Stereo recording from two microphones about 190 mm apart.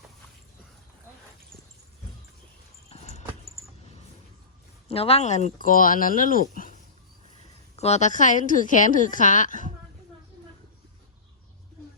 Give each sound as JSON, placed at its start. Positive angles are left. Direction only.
{"t": 2.9, "sound": "a sound", "side_deg": 35}
{"t": 4.9, "sound": "a woman's voice", "side_deg": 30}
{"t": 7.8, "sound": "a woman's voice", "side_deg": 35}